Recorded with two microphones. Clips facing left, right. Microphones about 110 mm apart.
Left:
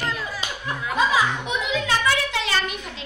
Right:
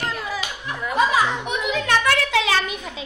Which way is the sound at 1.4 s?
60° right (ahead or behind).